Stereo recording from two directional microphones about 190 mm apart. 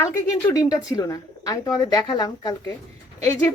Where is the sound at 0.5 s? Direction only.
20° left (ahead or behind).